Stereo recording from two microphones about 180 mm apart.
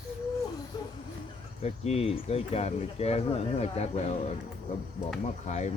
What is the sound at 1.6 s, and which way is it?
Speech, 35° left (ahead or behind).